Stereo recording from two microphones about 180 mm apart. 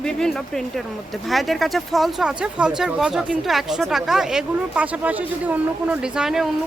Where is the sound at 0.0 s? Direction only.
5° left (ahead or behind).